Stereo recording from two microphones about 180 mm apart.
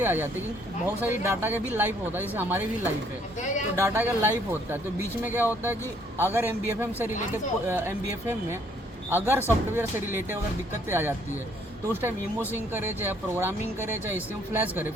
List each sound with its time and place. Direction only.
0.0 s speech: 10° right (ahead or behind)
3.4 s a sound: 45° left (ahead or behind)
3.8 s speech: 15° right (ahead or behind)
12.5 s speech: 10° right (ahead or behind)